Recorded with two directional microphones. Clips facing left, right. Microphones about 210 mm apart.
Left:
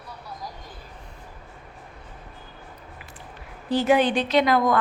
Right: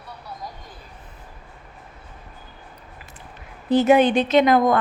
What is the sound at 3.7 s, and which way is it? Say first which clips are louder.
A woman's voice: right 4 dB; 20° right (ahead or behind).